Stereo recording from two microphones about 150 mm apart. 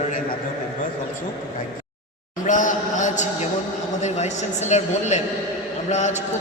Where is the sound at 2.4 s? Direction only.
55° left (ahead or behind).